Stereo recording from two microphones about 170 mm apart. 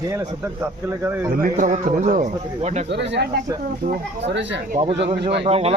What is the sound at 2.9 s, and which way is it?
Speech, 90° right.